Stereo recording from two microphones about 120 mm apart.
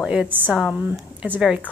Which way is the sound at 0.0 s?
10° right (ahead or behind).